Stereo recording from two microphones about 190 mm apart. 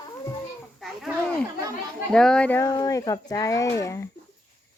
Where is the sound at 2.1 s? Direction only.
5° left (ahead or behind).